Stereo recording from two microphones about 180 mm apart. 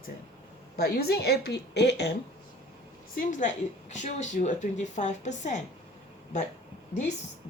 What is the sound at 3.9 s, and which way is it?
Speech, 40° left (ahead or behind).